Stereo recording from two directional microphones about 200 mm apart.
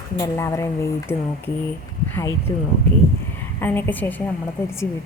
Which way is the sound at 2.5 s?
15° left (ahead or behind).